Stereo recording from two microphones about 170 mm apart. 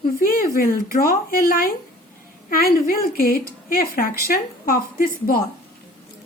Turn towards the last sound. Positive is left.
turn(degrees=55)  # may be behind; listen again after turning